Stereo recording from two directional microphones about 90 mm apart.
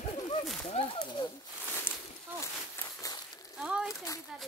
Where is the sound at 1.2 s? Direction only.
80° left.